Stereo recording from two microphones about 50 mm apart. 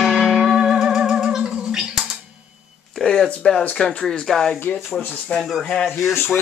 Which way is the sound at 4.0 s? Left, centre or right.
Centre.